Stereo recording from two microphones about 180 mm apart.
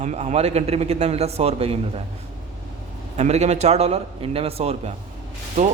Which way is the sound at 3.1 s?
40° right (ahead or behind).